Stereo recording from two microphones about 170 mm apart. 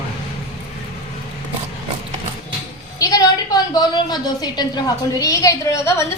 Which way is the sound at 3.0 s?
20° left (ahead or behind).